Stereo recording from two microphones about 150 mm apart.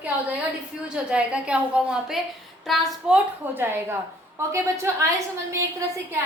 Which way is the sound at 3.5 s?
15° right (ahead or behind).